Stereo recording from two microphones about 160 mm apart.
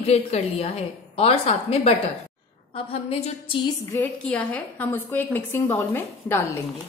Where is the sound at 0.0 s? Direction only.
40° left (ahead or behind).